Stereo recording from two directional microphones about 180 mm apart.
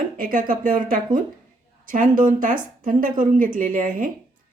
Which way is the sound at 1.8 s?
50° right (ahead or behind).